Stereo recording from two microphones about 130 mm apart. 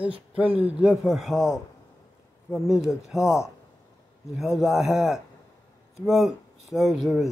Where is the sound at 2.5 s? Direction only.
5° right (ahead or behind).